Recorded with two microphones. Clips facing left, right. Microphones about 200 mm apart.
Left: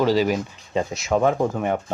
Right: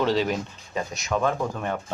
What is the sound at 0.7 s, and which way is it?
Speech, 20° left (ahead or behind).